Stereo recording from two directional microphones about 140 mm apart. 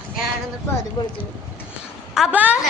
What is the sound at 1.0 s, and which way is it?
Speech, 30° left (ahead or behind).